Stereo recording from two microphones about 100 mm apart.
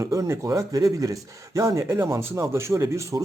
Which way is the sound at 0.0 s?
30° right (ahead or behind).